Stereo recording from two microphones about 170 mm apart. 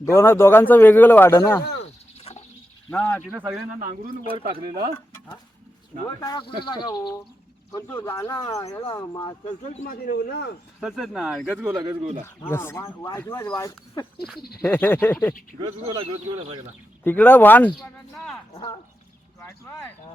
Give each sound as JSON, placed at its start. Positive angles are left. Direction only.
{"t": 0.0, "sound": "a man's voice", "side_deg": 15}
{"t": 1.8, "sound": "a sound", "side_deg": 40}
{"t": 2.9, "sound": "a man's voice", "side_deg": 10}
{"t": 3.2, "sound": "speech", "side_deg": -10}
{"t": 3.8, "sound": "speech", "side_deg": -50}
{"t": 6.1, "sound": "speech", "side_deg": 20}
{"t": 7.7, "sound": "speech", "side_deg": 15}
{"t": 9.8, "sound": "speech", "side_deg": 65}
{"t": 10.8, "sound": "speech", "side_deg": 0}
{"t": 11.7, "sound": "speech", "side_deg": -25}
{"t": 12.4, "sound": "a man's voice", "side_deg": 15}
{"t": 15.6, "sound": "speech", "side_deg": -25}
{"t": 17.0, "sound": "a man's voice", "side_deg": 10}
{"t": 19.4, "sound": "a sound", "side_deg": 15}